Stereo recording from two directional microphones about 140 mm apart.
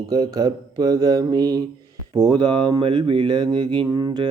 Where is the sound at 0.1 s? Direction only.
30° right (ahead or behind).